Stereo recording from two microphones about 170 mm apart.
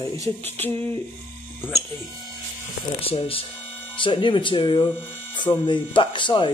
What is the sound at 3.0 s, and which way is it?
Speech, 35° left (ahead or behind).